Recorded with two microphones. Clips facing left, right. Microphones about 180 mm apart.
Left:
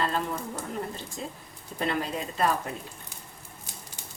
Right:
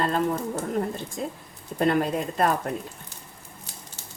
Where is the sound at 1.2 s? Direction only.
50° right (ahead or behind).